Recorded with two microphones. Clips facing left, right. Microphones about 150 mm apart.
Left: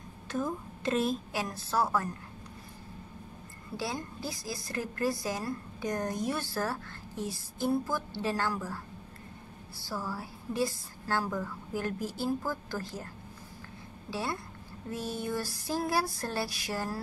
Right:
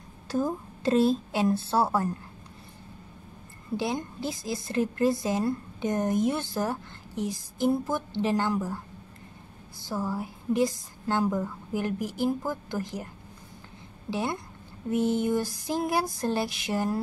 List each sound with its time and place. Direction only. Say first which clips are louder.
0.3 s a woman's voice: right 5 dB; 35° right (ahead or behind)
3.7 s a woman's voice: right 6 dB; 20° right (ahead or behind)
14.1 s a woman's voice: right 5 dB; 20° right (ahead or behind)